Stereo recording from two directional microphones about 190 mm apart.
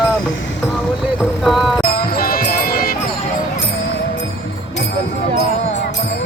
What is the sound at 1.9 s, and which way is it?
Music, 50° left (ahead or behind).